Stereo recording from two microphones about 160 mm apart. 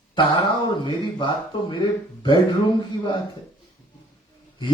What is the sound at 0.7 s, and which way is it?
A man's voice, 30° left (ahead or behind).